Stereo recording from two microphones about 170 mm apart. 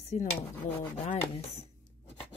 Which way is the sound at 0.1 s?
45° left (ahead or behind).